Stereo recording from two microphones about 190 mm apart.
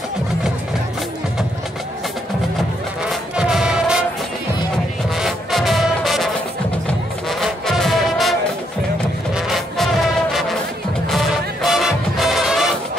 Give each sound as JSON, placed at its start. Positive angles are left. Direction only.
{"t": 3.1, "sound": "music", "side_deg": 0}
{"t": 5.2, "sound": "music", "side_deg": 0}
{"t": 11.1, "sound": "music", "side_deg": 0}